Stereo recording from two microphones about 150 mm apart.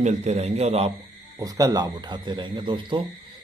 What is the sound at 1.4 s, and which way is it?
A man's voice, 25° right (ahead or behind).